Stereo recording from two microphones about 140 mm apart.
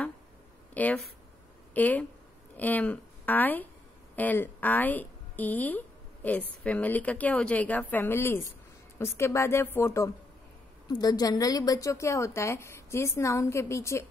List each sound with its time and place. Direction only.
0.7 s a woman's voice: 10° left (ahead or behind)